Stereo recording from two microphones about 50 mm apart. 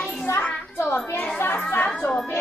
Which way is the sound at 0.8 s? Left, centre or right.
Left.